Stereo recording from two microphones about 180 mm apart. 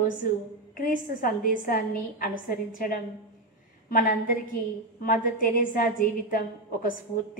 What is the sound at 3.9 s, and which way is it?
A woman's voice, 50° left (ahead or behind).